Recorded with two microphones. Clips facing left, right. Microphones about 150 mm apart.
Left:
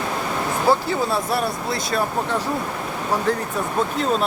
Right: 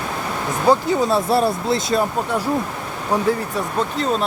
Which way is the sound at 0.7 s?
25° right (ahead or behind).